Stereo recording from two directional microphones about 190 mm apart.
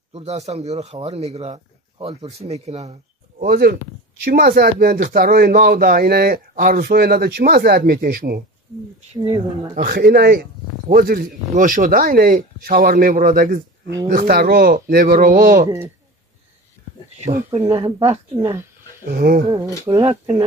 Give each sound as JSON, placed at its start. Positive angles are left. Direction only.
{"t": 0.1, "sound": "speech", "side_deg": -35}
{"t": 3.4, "sound": "speech", "side_deg": -55}
{"t": 9.1, "sound": "speech", "side_deg": -30}
{"t": 9.8, "sound": "speech", "side_deg": -55}
{"t": 17.6, "sound": "speech", "side_deg": -25}
{"t": 19.0, "sound": "speech", "side_deg": -50}
{"t": 19.9, "sound": "speech", "side_deg": -25}